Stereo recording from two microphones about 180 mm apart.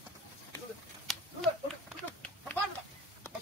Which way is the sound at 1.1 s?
Centre (ahead or behind).